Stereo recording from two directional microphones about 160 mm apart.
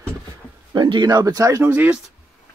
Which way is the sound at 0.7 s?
30° right (ahead or behind).